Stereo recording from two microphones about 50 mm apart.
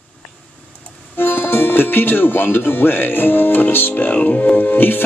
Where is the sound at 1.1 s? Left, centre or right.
Left.